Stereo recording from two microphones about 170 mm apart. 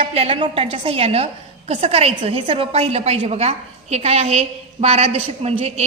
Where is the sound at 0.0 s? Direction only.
35° right (ahead or behind).